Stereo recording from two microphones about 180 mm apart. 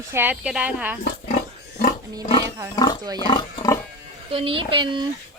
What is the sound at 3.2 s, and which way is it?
Pig, 25° left (ahead or behind).